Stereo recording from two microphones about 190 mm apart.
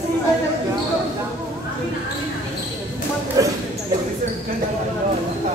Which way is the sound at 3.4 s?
20° right (ahead or behind).